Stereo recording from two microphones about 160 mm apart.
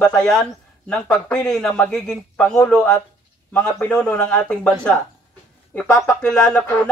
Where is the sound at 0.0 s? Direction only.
5° left (ahead or behind).